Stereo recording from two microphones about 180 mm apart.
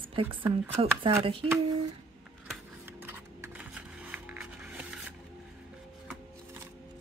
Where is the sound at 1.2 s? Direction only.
30° right (ahead or behind).